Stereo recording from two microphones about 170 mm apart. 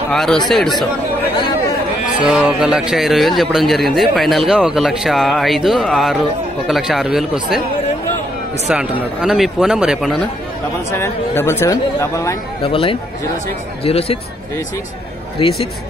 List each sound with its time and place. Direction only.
0.1 s a man's voice: 5° left (ahead or behind)
1.3 s chatter: 25° left (ahead or behind)
2.2 s a man's voice: 5° right (ahead or behind)
9.2 s a man's voice: 5° right (ahead or behind)
10.9 s speech: 15° left (ahead or behind)
12.6 s speech: 30° left (ahead or behind)
15.3 s speech: 35° left (ahead or behind)